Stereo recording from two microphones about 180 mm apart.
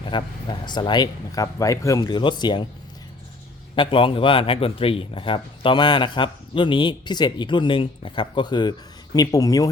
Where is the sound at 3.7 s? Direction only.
30° left (ahead or behind).